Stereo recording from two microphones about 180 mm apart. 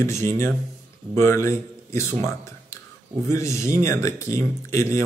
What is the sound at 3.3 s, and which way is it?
Speech, 15° left (ahead or behind).